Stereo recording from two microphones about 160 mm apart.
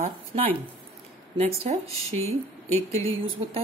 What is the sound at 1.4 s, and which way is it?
Speech, 40° right (ahead or behind).